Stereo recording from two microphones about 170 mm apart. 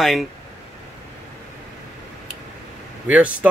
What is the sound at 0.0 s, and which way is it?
Speech, centre (ahead or behind).